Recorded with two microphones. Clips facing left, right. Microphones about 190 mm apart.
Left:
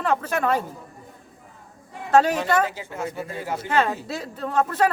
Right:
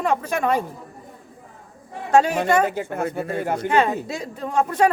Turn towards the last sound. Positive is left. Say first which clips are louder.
# right 2 dB
turn(degrees=-10)  # may be behind; listen again after turning